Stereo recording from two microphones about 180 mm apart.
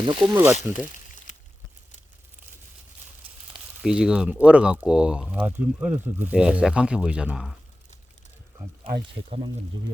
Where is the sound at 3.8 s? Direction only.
5° right (ahead or behind).